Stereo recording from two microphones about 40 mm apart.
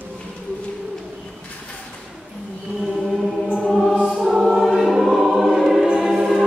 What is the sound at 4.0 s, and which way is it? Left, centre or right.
Choir, centre.